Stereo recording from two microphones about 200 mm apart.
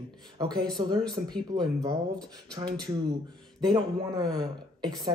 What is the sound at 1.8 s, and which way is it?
A man's voice, 20° right (ahead or behind).